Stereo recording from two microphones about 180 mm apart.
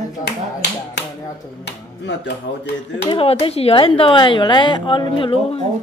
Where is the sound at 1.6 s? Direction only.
80° left.